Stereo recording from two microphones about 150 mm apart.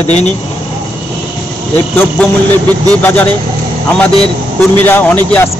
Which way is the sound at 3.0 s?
10° left (ahead or behind).